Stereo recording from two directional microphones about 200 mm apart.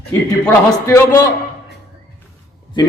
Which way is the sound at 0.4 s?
10° left (ahead or behind).